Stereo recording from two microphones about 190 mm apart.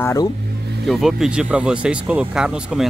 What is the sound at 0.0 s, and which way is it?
Speech, 15° left (ahead or behind).